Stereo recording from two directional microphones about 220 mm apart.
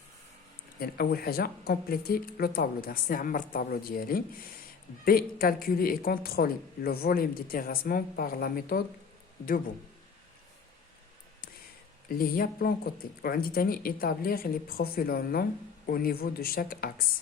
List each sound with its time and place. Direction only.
0.8 s speech: 45° left (ahead or behind)
12.0 s speech: 40° left (ahead or behind)